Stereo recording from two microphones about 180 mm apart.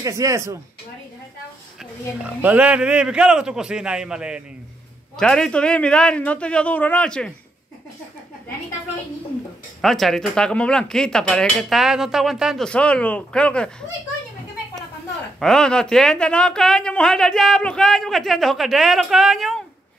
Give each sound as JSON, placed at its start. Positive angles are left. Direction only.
{"t": 0.0, "sound": "speech", "side_deg": -20}
{"t": 2.2, "sound": "speech", "side_deg": -10}
{"t": 9.8, "sound": "speech", "side_deg": 0}
{"t": 15.4, "sound": "speech", "side_deg": 5}